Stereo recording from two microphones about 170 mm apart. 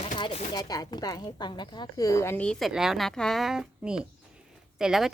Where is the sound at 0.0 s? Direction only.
40° left (ahead or behind).